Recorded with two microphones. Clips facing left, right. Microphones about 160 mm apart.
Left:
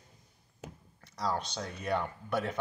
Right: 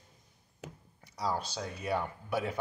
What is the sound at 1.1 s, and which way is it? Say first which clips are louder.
Speech: even; 10° right (ahead or behind).